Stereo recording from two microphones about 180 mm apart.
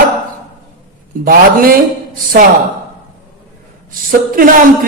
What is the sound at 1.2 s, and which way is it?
Speech, 55° right (ahead or behind).